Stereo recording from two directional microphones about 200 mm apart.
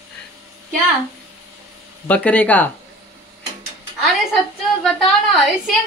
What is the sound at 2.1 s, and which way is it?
Speech, 5° left (ahead or behind).